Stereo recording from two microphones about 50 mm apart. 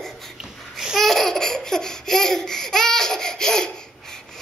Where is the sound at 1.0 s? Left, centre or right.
Centre.